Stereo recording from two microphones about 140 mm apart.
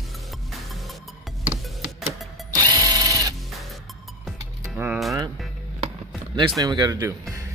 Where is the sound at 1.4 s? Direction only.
10° right (ahead or behind).